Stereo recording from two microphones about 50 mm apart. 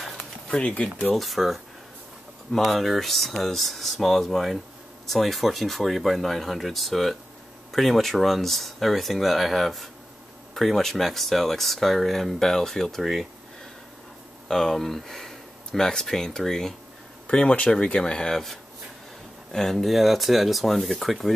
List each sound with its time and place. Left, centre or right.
0.0 s pigeon: centre
0.5 s speech: left
1.1 s speech: centre
14.5 s speech: centre
17.3 s speech: left
19.5 s speech: centre